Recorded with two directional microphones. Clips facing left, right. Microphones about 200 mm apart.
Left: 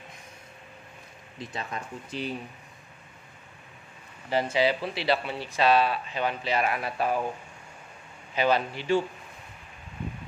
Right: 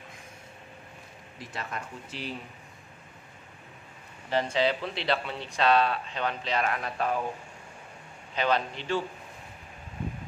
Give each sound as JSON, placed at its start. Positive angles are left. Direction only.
{"t": 1.4, "sound": "speech", "side_deg": 20}
{"t": 4.3, "sound": "speech", "side_deg": 10}
{"t": 8.4, "sound": "speech", "side_deg": 5}